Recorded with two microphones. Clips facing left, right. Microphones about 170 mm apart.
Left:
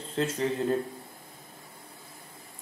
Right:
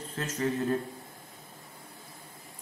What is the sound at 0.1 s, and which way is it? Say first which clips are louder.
Speech: left 3 dB; 30° left (ahead or behind).